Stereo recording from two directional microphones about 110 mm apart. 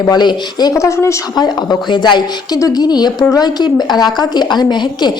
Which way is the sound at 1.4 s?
40° left (ahead or behind).